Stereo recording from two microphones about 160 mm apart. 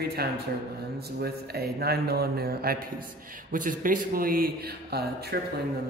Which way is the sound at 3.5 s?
55° right (ahead or behind).